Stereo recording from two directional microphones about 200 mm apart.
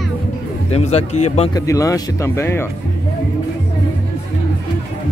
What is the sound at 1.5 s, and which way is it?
Speech, 15° left (ahead or behind).